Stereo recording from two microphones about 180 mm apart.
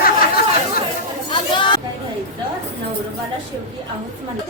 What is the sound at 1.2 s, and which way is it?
Chatter, 25° left (ahead or behind).